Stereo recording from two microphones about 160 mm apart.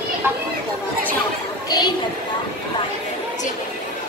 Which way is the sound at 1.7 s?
25° left (ahead or behind).